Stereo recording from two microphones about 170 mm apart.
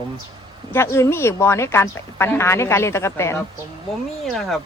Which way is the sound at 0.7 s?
15° left (ahead or behind).